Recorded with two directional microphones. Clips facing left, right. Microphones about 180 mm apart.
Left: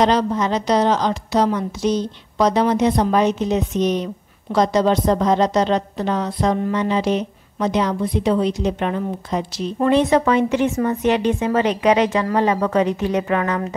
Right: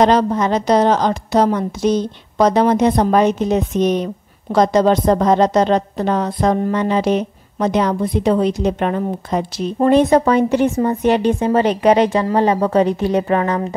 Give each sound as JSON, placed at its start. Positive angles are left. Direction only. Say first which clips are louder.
{"t": 0.0, "sound": "a woman's voice", "louder": "right 3 dB", "side_deg": -50}